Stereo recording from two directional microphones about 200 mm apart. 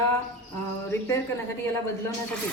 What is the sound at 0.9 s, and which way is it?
Speech, 15° left (ahead or behind).